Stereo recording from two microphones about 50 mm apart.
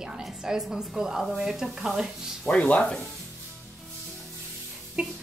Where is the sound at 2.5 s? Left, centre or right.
Left.